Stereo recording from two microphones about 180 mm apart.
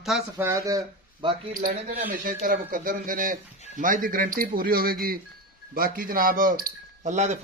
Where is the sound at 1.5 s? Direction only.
50° right (ahead or behind).